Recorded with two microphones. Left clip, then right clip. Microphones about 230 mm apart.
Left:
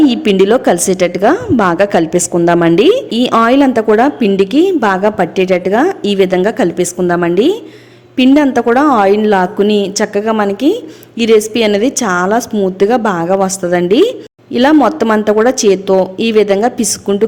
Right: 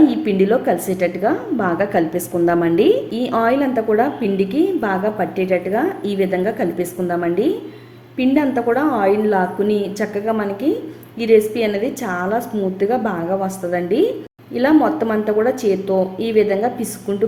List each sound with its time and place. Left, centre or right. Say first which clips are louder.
0.1 s a woman's voice: left 7 dB; left